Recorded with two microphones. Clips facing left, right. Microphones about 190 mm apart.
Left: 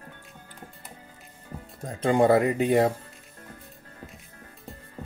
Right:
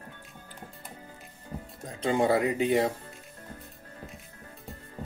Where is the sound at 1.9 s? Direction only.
50° left (ahead or behind).